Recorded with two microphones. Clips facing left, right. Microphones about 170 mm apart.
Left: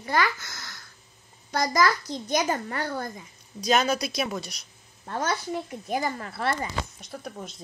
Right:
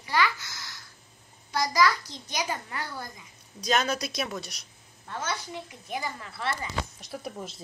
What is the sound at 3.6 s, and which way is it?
A woman's voice, 5° left (ahead or behind).